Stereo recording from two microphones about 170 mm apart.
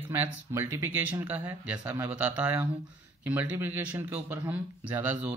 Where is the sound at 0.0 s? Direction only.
10° right (ahead or behind).